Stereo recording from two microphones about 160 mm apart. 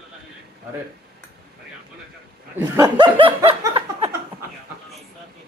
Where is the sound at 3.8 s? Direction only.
35° right (ahead or behind).